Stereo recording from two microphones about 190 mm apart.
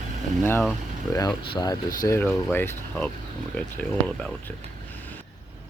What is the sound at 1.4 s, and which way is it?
Speech, 25° left (ahead or behind).